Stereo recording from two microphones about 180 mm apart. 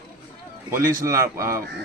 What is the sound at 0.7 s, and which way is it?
Speech, 15° right (ahead or behind).